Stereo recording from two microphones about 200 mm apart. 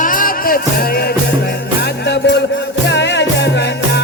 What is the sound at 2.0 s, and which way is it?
Music, 55° left (ahead or behind).